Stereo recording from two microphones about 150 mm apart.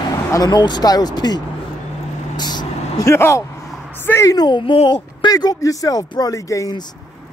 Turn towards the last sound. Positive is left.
turn(degrees=25)  # may be behind; listen again after turning